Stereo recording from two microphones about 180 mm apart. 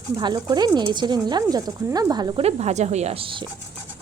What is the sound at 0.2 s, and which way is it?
Speech, 25° right (ahead or behind).